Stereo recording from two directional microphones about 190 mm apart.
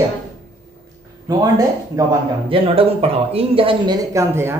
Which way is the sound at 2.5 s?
30° right (ahead or behind).